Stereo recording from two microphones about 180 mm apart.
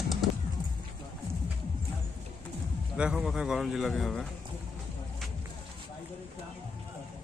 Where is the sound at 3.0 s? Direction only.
5° right (ahead or behind).